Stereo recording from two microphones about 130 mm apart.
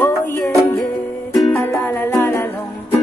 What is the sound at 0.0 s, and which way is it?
Music, 20° left (ahead or behind).